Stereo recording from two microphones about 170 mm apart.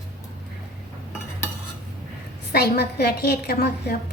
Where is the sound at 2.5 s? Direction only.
70° left (ahead or behind).